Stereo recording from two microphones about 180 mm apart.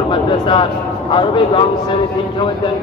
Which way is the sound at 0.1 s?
25° left (ahead or behind).